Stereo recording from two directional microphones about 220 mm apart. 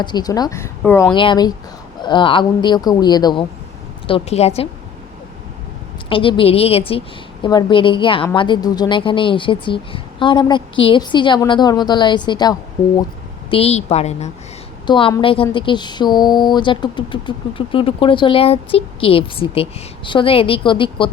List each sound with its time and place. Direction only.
0.0 s speech: 20° left (ahead or behind)
1.1 s a woman's voice: 20° left (ahead or behind)
6.1 s a woman's voice: 25° left (ahead or behind)